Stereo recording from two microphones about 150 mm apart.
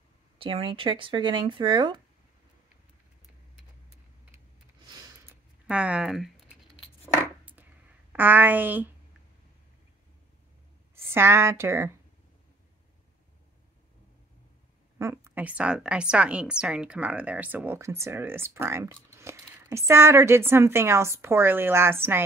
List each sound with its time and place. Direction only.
0.4 s speech: 35° right (ahead or behind)
4.8 s a sound: 25° right (ahead or behind)
5.7 s a woman's voice: 10° right (ahead or behind)
8.1 s a woman's voice: 15° right (ahead or behind)
11.1 s a woman's voice: 15° right (ahead or behind)
15.0 s a woman's voice: 15° right (ahead or behind)